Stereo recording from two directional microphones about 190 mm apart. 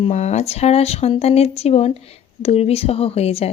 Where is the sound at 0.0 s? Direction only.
35° left (ahead or behind).